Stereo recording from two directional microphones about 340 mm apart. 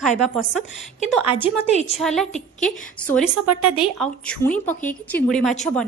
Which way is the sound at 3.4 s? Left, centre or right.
Right.